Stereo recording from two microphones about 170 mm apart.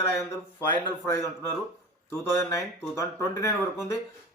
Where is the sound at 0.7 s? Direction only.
15° left (ahead or behind).